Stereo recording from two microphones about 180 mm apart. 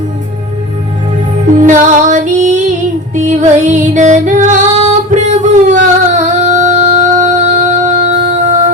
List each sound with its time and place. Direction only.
1.5 s music: 45° right (ahead or behind)